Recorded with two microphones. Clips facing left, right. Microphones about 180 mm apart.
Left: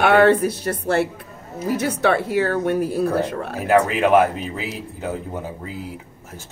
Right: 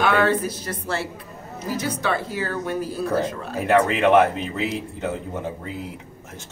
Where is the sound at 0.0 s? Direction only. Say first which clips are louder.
Left 5 dB; 65° left (ahead or behind).